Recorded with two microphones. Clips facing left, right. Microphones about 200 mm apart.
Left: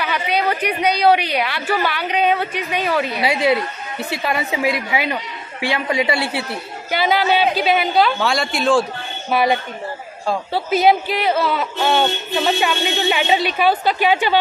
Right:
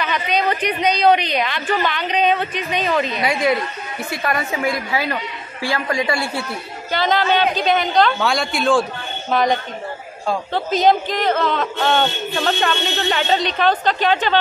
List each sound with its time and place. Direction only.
0.0 s a man's voice: 10° left (ahead or behind)